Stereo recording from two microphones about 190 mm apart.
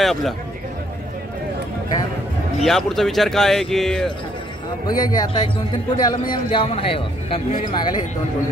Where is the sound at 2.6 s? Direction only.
Centre (ahead or behind).